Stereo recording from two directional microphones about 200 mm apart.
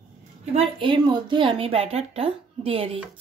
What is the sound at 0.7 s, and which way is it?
A woman's voice, 25° right (ahead or behind).